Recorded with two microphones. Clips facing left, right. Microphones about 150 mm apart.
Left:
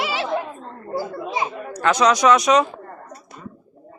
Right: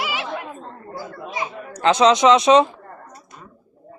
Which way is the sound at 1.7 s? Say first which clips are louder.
Right 3 dB; 25° right (ahead or behind).